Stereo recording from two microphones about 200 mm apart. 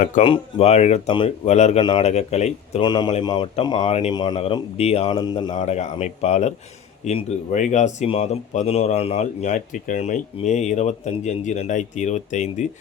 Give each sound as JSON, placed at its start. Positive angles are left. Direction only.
{"t": 0.2, "sound": "speech", "side_deg": 30}
{"t": 2.8, "sound": "speech", "side_deg": 20}
{"t": 5.5, "sound": "speech", "side_deg": 35}